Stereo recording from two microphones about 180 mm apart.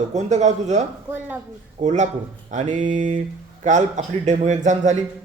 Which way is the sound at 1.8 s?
40° right (ahead or behind).